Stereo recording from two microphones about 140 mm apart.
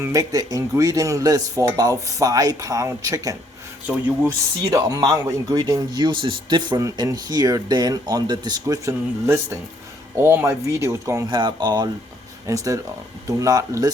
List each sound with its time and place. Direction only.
0.0 s a man's voice: 25° right (ahead or behind)
4.7 s a man's voice: 25° right (ahead or behind)
11.3 s a man's voice: 30° right (ahead or behind)